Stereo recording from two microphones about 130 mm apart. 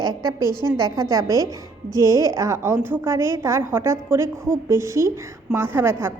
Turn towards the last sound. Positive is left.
turn(degrees=-15)  # may be behind; listen again after turning